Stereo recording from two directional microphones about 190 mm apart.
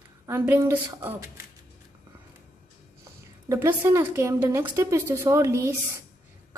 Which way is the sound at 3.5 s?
15° right (ahead or behind).